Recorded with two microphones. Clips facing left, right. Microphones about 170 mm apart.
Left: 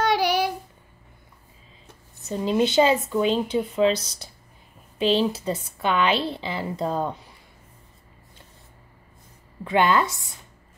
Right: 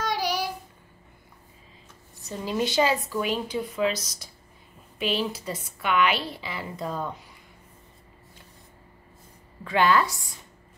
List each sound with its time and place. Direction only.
0.0 s child singing: 65° left (ahead or behind)
2.2 s a woman's voice: 25° left (ahead or behind)
9.7 s a woman's voice: 25° left (ahead or behind)